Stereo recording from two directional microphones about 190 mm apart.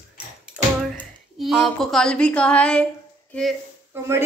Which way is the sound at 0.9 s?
Centre (ahead or behind).